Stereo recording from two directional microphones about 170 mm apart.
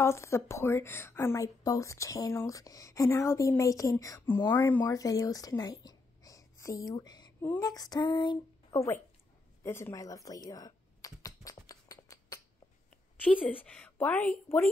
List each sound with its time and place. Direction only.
0.0 s a woman's voice: 15° left (ahead or behind)
9.6 s computer keyboard: 15° left (ahead or behind)
13.2 s a woman's voice: 10° left (ahead or behind)